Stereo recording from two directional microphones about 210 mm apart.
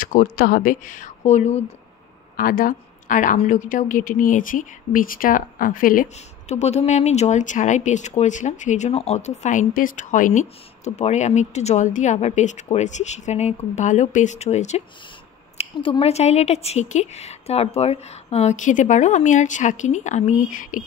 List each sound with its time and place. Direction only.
0.0 s speech: 40° left (ahead or behind)